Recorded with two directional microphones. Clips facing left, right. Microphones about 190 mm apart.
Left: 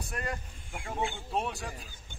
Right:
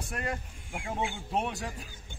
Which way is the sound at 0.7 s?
10° right (ahead or behind).